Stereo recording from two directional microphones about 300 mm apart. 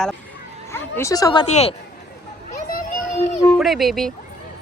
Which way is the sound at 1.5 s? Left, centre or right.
Left.